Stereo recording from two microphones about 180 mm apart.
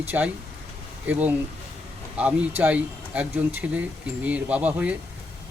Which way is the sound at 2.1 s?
5° right (ahead or behind).